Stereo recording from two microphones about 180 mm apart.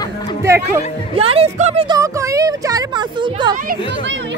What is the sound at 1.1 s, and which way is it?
Speech, 30° right (ahead or behind).